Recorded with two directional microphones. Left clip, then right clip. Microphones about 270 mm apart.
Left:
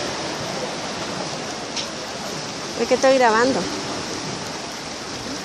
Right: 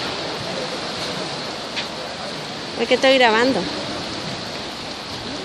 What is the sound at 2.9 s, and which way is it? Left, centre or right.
Speech, centre.